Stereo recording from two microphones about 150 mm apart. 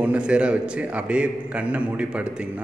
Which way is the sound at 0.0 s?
10° right (ahead or behind).